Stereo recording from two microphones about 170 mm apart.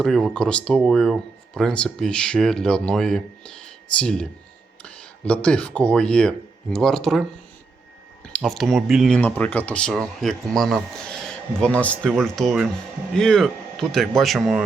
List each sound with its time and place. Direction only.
0.0 s speech: centre (ahead or behind)